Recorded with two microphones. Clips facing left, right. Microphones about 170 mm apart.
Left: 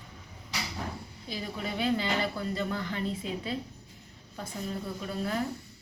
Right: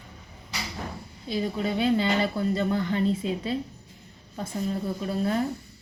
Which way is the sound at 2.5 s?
25° right (ahead or behind).